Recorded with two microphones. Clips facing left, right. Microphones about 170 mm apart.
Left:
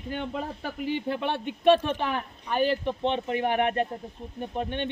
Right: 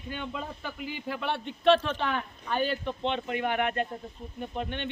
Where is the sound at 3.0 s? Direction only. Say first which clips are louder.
Left 3 dB; 25° left (ahead or behind).